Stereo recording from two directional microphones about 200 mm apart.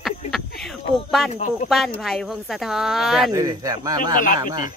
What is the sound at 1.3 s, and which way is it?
Speech, 35° left (ahead or behind).